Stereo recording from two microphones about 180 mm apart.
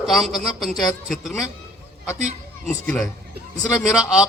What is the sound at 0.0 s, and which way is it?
A man's voice, centre (ahead or behind).